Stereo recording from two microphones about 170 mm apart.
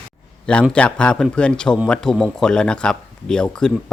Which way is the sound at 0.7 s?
5° left (ahead or behind).